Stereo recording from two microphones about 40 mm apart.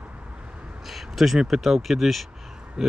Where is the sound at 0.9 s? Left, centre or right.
Centre.